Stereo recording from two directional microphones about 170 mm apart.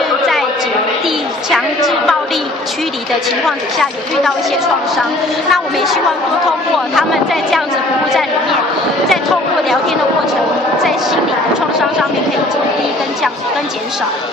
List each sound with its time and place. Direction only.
1.0 s a sound: centre (ahead or behind)
3.4 s speech: centre (ahead or behind)
5.5 s speech: centre (ahead or behind)
7.0 s speech: centre (ahead or behind)